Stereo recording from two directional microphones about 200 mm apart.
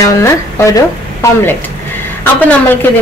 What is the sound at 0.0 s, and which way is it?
Speech, 15° left (ahead or behind).